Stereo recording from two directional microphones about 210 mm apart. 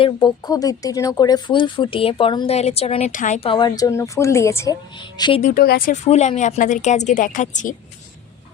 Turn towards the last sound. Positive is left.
turn(degrees=35)  # may be behind; listen again after turning